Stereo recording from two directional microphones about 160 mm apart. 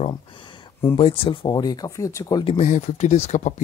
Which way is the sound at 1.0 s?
35° left (ahead or behind).